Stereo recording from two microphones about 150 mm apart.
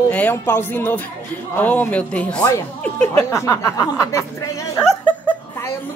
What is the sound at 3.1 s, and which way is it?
Speech, 20° left (ahead or behind).